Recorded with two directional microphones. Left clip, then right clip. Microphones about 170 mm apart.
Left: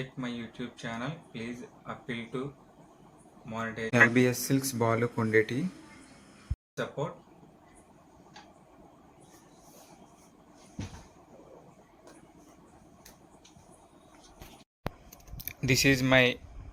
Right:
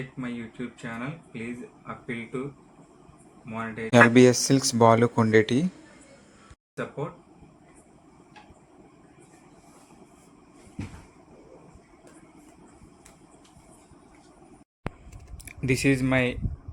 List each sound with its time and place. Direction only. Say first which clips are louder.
0.2 s speech: right 6 dB; centre (ahead or behind)
3.5 s speech: right 2 dB; centre (ahead or behind)
4.1 s speech: right 9 dB; 30° right (ahead or behind)
6.7 s speech: right 1 dB; centre (ahead or behind)
14.8 s a sound: right 1 dB; centre (ahead or behind)
15.4 s speech: right 1 dB; centre (ahead or behind)